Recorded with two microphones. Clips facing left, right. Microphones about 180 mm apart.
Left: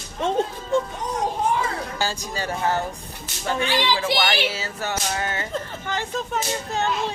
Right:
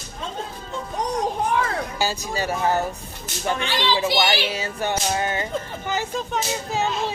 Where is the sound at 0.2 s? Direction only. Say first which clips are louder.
Left 9 dB; 80° left.